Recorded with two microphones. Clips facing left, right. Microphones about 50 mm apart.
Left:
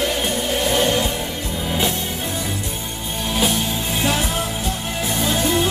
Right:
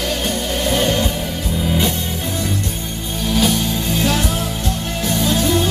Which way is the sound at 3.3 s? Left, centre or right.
Centre.